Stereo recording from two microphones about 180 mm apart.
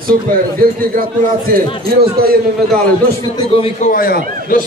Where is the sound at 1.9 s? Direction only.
55° right (ahead or behind).